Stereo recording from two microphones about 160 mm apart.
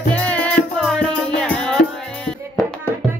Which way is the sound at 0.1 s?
10° left (ahead or behind).